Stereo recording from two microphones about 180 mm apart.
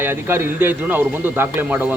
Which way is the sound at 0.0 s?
15° right (ahead or behind).